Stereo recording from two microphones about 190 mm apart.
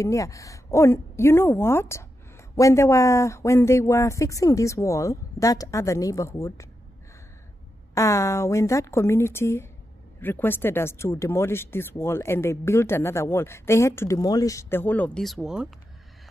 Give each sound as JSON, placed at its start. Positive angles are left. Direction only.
{"t": 0.0, "sound": "a woman's voice", "side_deg": 15}
{"t": 7.9, "sound": "a woman's voice", "side_deg": 15}